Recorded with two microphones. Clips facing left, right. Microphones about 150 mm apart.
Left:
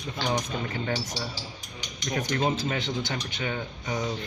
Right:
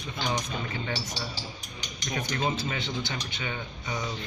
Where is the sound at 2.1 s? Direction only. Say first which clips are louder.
Left 3 dB; 50° left (ahead or behind).